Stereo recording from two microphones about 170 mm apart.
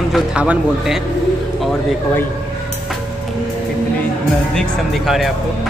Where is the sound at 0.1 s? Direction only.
5° right (ahead or behind).